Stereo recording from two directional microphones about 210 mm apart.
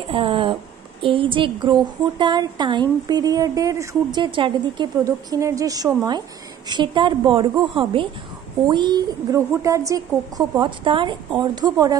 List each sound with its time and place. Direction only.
0.1 s a woman's voice: 25° right (ahead or behind)